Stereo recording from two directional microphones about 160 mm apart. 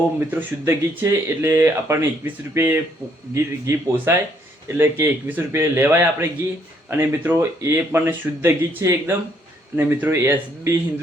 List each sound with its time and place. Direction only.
0.2 s speech: 10° right (ahead or behind)